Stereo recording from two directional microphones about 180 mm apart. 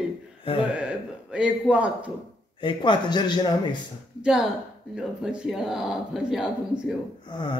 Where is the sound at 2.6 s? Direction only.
25° left (ahead or behind).